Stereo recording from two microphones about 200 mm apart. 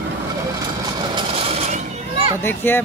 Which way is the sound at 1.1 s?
30° right (ahead or behind).